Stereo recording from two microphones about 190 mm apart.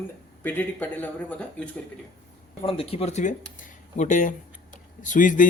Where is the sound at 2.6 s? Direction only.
30° left (ahead or behind).